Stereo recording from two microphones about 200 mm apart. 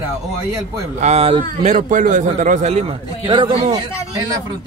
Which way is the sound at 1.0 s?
30° right (ahead or behind).